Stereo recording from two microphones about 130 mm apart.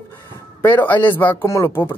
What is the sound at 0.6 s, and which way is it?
Speech, 15° left (ahead or behind).